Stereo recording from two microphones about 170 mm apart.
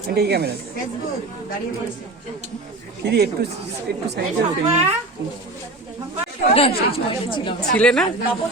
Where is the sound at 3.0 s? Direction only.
75° right (ahead or behind).